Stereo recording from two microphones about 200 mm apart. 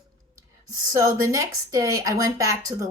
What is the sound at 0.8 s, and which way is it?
Speech, 15° right (ahead or behind).